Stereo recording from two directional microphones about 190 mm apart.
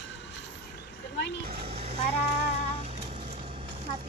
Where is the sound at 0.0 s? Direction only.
70° left (ahead or behind).